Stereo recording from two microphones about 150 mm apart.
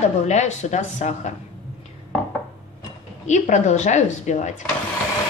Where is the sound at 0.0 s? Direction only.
50° left (ahead or behind).